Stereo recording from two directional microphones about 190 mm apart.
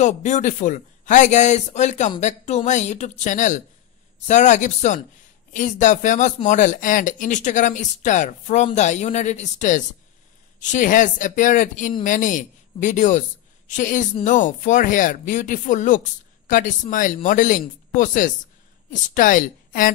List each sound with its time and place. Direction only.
0.0 s a man's voice: 40° left (ahead or behind)